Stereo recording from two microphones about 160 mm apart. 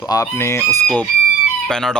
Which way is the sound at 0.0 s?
20° left (ahead or behind).